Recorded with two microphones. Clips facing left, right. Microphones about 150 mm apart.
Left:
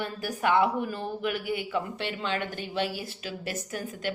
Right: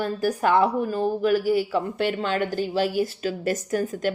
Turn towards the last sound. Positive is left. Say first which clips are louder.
# right 9 dB
turn(degrees=-45)  # may be behind; listen again after turning